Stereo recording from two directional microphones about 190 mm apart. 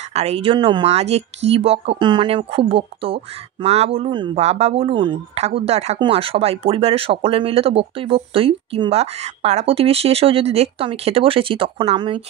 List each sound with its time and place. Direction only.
0.1 s speech: 35° right (ahead or behind)